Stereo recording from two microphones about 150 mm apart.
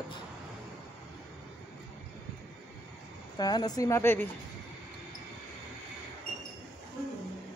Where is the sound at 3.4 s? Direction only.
25° left (ahead or behind).